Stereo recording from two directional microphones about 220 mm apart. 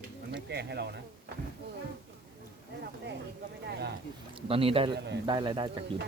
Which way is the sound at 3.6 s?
50° right (ahead or behind).